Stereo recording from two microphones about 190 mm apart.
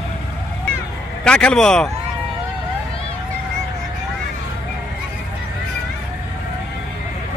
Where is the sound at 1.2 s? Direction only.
5° left (ahead or behind).